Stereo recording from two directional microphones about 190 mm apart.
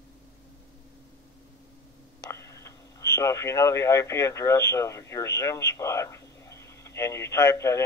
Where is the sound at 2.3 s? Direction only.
15° left (ahead or behind).